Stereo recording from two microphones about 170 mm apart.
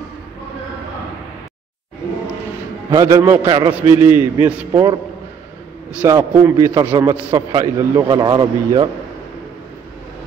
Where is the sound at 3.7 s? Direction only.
10° right (ahead or behind).